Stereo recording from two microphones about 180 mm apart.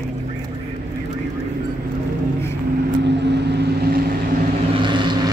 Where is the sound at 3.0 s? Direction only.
70° right (ahead or behind).